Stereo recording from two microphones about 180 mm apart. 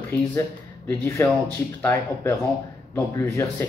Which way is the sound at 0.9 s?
15° left (ahead or behind).